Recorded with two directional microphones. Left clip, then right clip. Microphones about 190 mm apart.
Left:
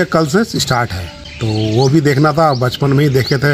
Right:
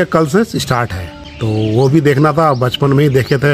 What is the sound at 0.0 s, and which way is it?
Speech, 15° right (ahead or behind).